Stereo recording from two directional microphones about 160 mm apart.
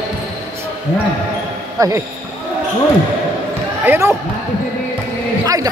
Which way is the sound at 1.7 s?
20° right (ahead or behind).